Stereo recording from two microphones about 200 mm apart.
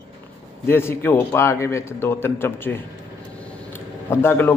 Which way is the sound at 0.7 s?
10° left (ahead or behind).